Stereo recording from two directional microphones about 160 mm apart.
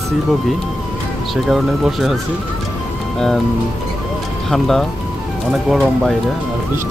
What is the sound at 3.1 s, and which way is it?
Speech, centre (ahead or behind).